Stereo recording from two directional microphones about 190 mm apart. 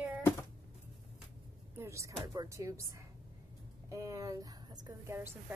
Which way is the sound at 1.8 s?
15° right (ahead or behind).